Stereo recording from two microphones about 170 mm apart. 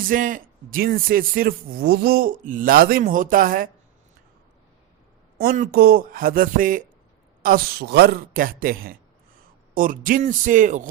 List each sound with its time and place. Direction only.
0.0 s a man's voice: 50° right (ahead or behind)
5.4 s a man's voice: 60° right (ahead or behind)